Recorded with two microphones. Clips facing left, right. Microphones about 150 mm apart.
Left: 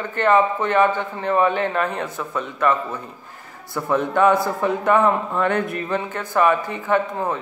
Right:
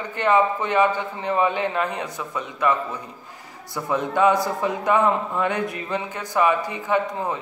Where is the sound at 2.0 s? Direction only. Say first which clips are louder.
Left 3 dB; 55° left (ahead or behind).